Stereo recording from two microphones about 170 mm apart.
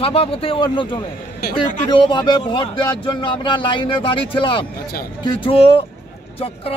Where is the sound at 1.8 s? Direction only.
25° left (ahead or behind).